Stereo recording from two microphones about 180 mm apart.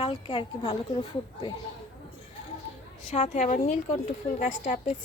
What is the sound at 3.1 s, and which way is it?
A woman's voice, 40° left (ahead or behind).